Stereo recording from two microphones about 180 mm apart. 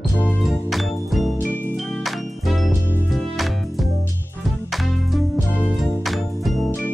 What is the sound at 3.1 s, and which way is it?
Music, centre (ahead or behind).